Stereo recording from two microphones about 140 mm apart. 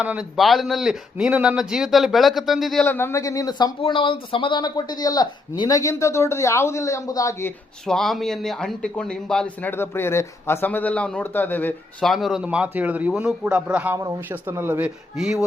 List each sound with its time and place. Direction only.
0.0 s a man's voice: 10° right (ahead or behind)
2.8 s speech: 15° left (ahead or behind)
3.8 s speech: 40° left (ahead or behind)
7.9 s a man's voice: 5° left (ahead or behind)
9.7 s speech: 15° left (ahead or behind)
12.0 s a man's voice: centre (ahead or behind)